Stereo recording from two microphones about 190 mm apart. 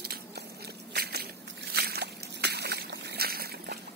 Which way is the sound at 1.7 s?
55° right (ahead or behind).